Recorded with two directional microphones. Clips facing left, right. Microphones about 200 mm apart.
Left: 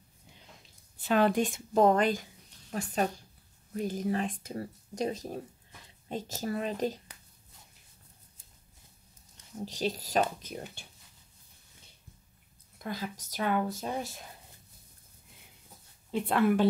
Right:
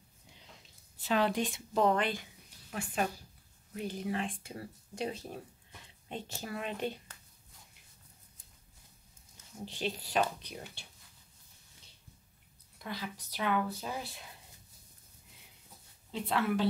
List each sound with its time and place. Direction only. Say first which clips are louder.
1.0 s a woman's voice: left 5 dB; 50° left (ahead or behind)
9.7 s a woman's voice: left 4 dB; 40° left (ahead or behind)
12.7 s a woman's voice: left 4 dB; 45° left (ahead or behind)
16.1 s a woman's voice: left 6 dB; 55° left (ahead or behind)